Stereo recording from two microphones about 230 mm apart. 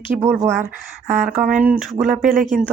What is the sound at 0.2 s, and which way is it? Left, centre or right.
Speech, centre.